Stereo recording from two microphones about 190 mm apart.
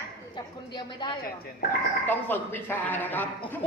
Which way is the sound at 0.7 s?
25° left (ahead or behind).